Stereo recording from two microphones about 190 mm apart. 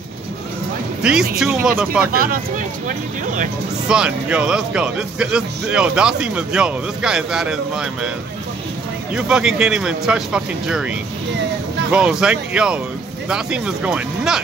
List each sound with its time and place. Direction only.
1.0 s speech: 5° right (ahead or behind)
2.1 s speech: 45° right (ahead or behind)
3.9 s speech: 5° right (ahead or behind)
9.1 s speech: 5° right (ahead or behind)
11.9 s speech: 5° right (ahead or behind)